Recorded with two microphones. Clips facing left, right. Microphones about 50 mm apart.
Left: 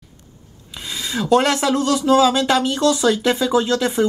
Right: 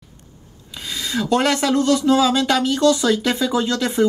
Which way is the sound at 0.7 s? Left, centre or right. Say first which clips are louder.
Right 1 dB; centre.